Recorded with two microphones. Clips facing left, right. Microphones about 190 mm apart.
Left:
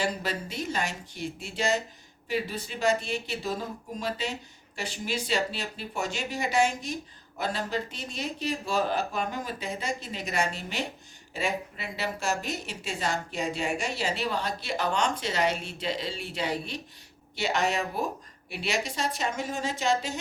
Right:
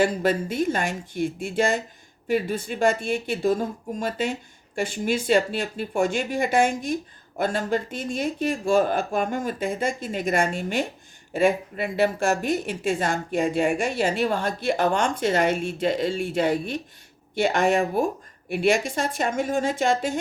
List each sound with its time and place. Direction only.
0.0 s speech: 50° right (ahead or behind)